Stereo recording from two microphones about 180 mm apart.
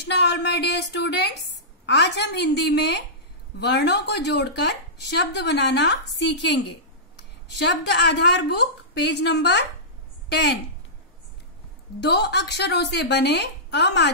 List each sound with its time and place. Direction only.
0.1 s a woman's voice: 70° left (ahead or behind)
12.0 s a woman's voice: 65° left (ahead or behind)